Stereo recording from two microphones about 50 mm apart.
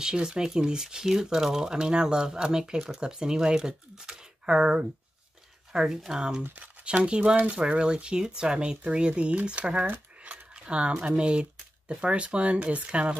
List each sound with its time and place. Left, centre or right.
0.0 s speech: centre
6.5 s speech: right
9.8 s a sound: right
11.0 s speech: right